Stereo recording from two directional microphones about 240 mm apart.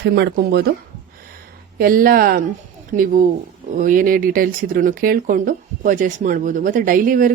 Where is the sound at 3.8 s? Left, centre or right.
Right.